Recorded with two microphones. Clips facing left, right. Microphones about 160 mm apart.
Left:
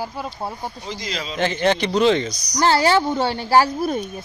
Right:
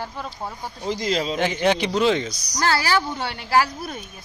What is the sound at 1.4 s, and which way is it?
A man's voice, 10° right (ahead or behind).